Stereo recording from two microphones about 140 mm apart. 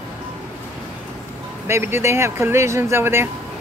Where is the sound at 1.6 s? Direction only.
15° right (ahead or behind).